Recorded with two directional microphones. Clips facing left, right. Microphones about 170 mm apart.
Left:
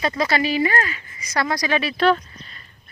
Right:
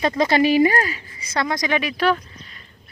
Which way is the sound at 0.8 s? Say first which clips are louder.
Right 2 dB; 30° right (ahead or behind).